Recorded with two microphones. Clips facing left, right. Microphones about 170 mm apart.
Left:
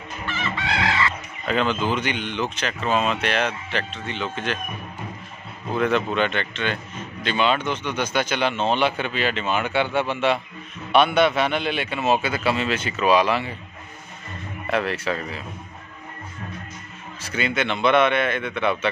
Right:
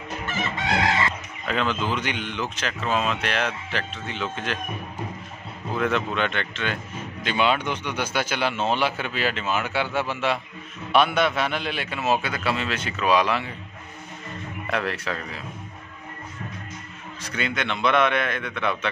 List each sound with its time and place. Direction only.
0.3 s chicken: 45° right (ahead or behind)
1.5 s speech: centre (ahead or behind)
5.8 s speech: centre (ahead or behind)
14.7 s speech: centre (ahead or behind)
17.2 s speech: centre (ahead or behind)